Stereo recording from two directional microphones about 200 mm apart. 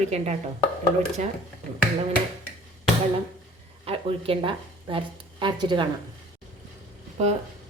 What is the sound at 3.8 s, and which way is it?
Speech, 25° right (ahead or behind).